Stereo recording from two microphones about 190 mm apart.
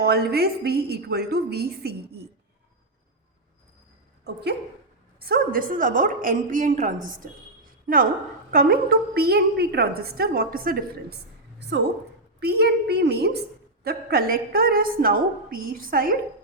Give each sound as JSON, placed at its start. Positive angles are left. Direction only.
{"t": 0.0, "sound": "a woman's voice", "side_deg": -55}
{"t": 4.2, "sound": "speech", "side_deg": -60}
{"t": 5.2, "sound": "a woman's voice", "side_deg": -50}
{"t": 7.6, "sound": "a sound", "side_deg": -50}
{"t": 8.5, "sound": "a woman's voice", "side_deg": -55}
{"t": 12.4, "sound": "a woman's voice", "side_deg": -60}